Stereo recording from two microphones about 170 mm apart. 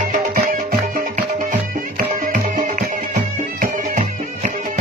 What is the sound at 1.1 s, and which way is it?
Music, 50° right (ahead or behind).